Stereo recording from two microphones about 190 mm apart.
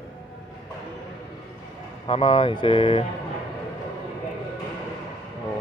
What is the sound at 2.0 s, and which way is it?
A man's voice, 30° left (ahead or behind).